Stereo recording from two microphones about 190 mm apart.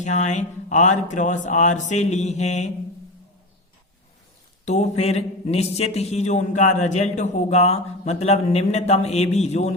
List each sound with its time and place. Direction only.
0.0 s a man's voice: 40° left (ahead or behind)
4.6 s a man's voice: 35° left (ahead or behind)